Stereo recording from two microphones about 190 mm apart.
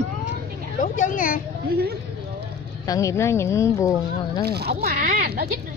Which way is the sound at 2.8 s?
15° left (ahead or behind).